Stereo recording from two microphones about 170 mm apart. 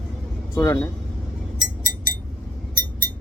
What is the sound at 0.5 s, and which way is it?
Speech, 15° left (ahead or behind).